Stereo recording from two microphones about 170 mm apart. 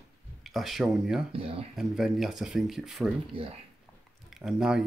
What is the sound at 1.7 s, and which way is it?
Speech, centre (ahead or behind).